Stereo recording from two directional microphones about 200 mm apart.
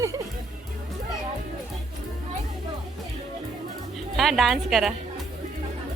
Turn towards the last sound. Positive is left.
turn(degrees=0)  # may be behind; listen again after turning